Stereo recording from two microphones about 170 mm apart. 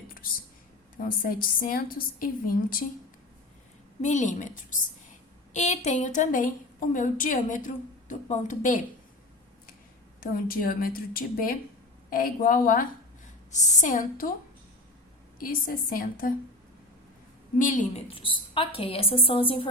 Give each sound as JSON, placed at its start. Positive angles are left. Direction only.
{"t": 0.9, "sound": "a woman's voice", "side_deg": 55}
{"t": 4.0, "sound": "a woman's voice", "side_deg": 45}
{"t": 10.2, "sound": "a woman's voice", "side_deg": 60}
{"t": 15.4, "sound": "a woman's voice", "side_deg": 55}
{"t": 17.6, "sound": "a woman's voice", "side_deg": 50}
{"t": 18.1, "sound": "a woman's voice", "side_deg": 30}